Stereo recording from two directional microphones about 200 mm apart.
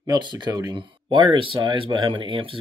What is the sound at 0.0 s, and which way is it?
Speech, 20° right (ahead or behind).